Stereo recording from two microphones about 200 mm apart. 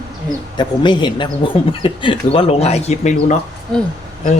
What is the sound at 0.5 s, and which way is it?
A man's voice, 20° left (ahead or behind).